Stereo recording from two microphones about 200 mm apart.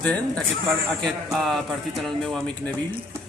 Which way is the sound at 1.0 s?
Centre (ahead or behind).